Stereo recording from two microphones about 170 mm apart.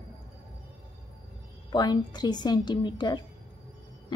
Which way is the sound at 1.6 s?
25° left (ahead or behind).